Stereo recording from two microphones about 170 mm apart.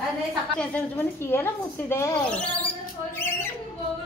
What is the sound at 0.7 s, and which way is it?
Speech, 10° left (ahead or behind).